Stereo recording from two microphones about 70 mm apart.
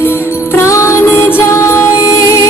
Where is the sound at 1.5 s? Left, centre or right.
Left.